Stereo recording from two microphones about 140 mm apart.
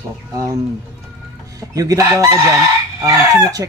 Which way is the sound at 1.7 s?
25° right (ahead or behind).